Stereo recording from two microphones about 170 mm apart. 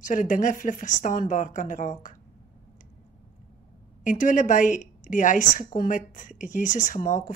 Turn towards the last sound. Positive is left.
turn(degrees=45)  # may be behind; listen again after turning